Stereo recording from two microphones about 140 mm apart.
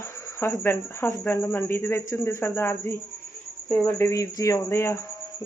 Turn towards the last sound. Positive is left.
turn(degrees=20)  # may be behind; listen again after turning